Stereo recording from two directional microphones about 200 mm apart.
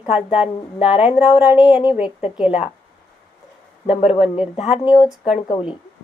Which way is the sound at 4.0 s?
5° right (ahead or behind).